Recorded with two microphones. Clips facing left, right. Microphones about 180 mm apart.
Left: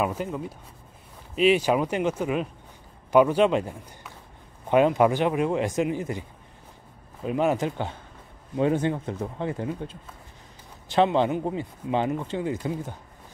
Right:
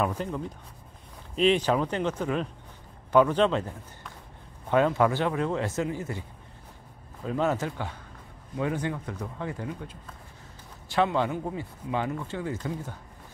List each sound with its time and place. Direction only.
0.0 s a man's voice: 10° left (ahead or behind)
7.2 s speech: 15° left (ahead or behind)